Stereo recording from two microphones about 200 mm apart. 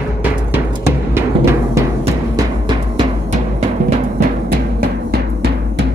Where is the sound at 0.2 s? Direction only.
10° right (ahead or behind).